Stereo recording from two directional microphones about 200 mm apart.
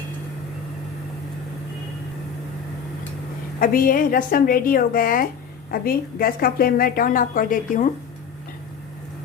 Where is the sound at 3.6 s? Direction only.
45° left (ahead or behind).